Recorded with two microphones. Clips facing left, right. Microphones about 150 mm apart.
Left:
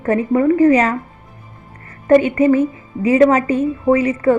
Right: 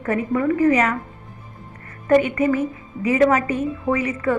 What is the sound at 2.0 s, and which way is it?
A woman's voice, 30° left (ahead or behind).